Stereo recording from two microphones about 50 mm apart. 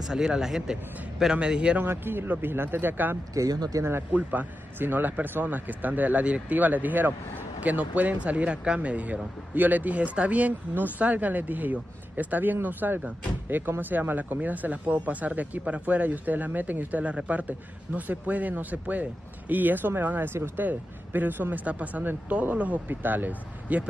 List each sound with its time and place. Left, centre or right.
0.1 s a man's voice: centre
1.8 s speech: right